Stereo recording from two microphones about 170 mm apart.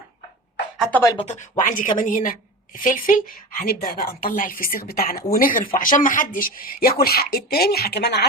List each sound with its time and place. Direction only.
0.9 s speech: 10° left (ahead or behind)
1.3 s speech: 45° left (ahead or behind); by 8.3 s 80° left